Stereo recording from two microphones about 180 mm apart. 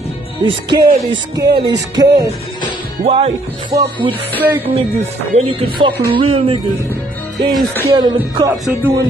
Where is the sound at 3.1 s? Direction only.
30° right (ahead or behind).